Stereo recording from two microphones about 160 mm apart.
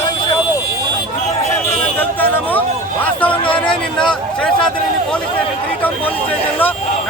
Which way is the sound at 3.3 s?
30° left (ahead or behind).